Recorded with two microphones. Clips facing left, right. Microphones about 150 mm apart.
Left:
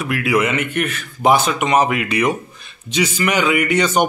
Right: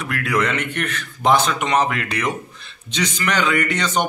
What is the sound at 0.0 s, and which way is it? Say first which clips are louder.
A man's voice: left 4 dB; 10° left (ahead or behind).